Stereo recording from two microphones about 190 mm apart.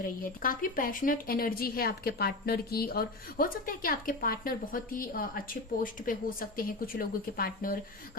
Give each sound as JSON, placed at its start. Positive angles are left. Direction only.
{"t": 0.2, "sound": "speech", "side_deg": 45}